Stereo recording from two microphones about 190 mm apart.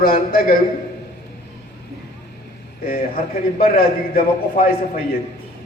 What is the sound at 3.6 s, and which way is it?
A man's voice, 50° left (ahead or behind).